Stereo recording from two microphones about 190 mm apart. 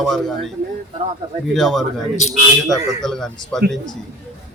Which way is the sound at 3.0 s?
Centre (ahead or behind).